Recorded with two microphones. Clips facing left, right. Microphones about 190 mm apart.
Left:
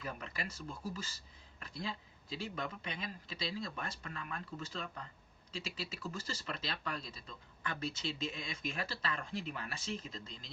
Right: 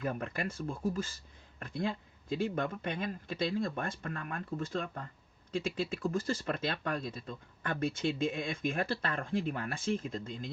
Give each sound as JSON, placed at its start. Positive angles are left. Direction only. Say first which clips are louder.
{"t": 0.0, "sound": "speech", "louder": "right 8 dB", "side_deg": -50}